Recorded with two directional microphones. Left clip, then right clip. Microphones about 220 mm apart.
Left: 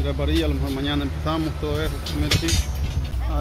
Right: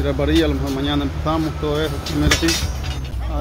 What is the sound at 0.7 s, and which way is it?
Speech, 5° right (ahead or behind).